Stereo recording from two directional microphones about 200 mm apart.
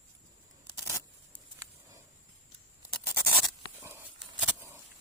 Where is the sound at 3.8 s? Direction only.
10° right (ahead or behind).